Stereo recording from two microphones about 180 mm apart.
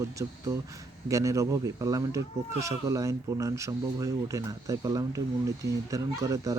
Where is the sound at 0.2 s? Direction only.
20° right (ahead or behind).